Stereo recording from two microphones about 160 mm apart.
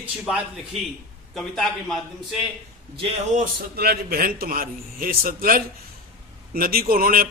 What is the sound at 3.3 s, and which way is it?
A man's voice, 65° right (ahead or behind).